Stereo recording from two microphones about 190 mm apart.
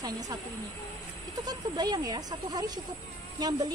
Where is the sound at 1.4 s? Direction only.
20° right (ahead or behind).